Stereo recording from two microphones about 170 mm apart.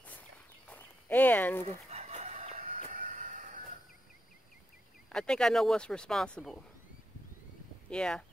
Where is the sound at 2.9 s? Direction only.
50° right (ahead or behind).